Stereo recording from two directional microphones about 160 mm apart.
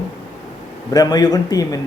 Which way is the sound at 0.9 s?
25° left (ahead or behind).